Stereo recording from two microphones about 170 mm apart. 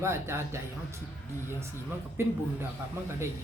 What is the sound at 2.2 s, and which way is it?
Speech, 15° right (ahead or behind).